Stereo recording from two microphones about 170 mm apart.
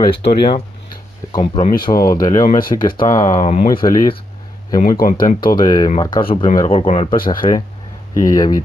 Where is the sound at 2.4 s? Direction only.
50° left (ahead or behind).